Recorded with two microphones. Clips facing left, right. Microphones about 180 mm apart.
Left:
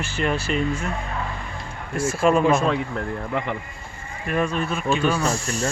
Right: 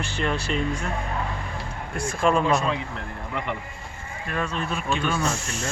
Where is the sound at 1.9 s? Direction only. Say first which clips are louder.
Left 3 dB; 5° left (ahead or behind).